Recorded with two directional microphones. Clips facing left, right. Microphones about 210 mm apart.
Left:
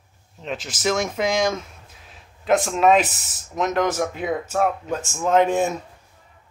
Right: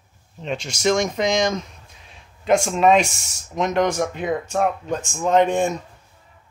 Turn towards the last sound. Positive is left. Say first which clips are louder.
# right 1 dB
turn(degrees=5)  # may be behind; listen again after turning